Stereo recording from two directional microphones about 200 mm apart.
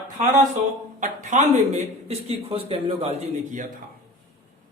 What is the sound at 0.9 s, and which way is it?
A man's voice, 40° right (ahead or behind).